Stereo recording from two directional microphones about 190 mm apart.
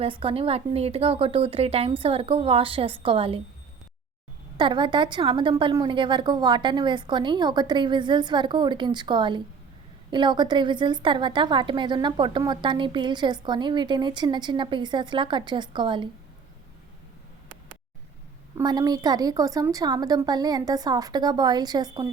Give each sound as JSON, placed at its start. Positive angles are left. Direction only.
{"t": 0.0, "sound": "a woman's voice", "side_deg": -30}
{"t": 4.5, "sound": "a woman's voice", "side_deg": -25}
{"t": 18.5, "sound": "a woman's voice", "side_deg": -20}